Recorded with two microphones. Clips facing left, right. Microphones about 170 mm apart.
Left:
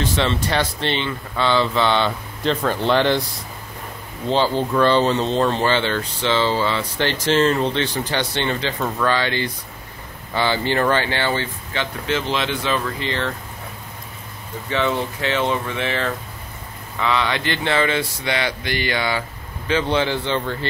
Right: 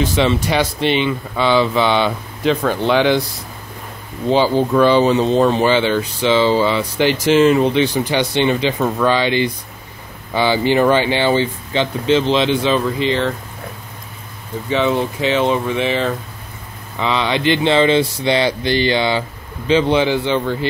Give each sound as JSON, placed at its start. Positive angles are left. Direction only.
{"t": 0.0, "sound": "speech", "side_deg": -10}
{"t": 4.3, "sound": "speech", "side_deg": -10}
{"t": 14.7, "sound": "speech", "side_deg": -15}
{"t": 17.0, "sound": "mantra", "side_deg": -20}
{"t": 19.7, "sound": "speech", "side_deg": -15}